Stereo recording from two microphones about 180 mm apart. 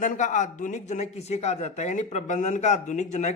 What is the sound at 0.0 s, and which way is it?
Speech, 45° left (ahead or behind).